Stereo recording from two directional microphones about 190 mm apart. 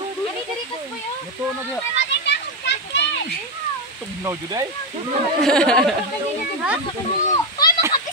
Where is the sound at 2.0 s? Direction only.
70° left (ahead or behind).